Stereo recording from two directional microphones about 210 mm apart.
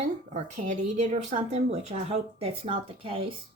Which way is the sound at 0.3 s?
35° right (ahead or behind).